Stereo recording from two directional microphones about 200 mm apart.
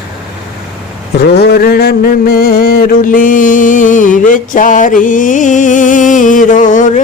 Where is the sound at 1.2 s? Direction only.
55° left (ahead or behind).